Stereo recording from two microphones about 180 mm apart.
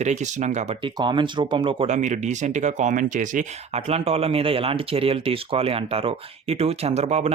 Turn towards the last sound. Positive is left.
turn(degrees=-35)  # may be behind; listen again after turning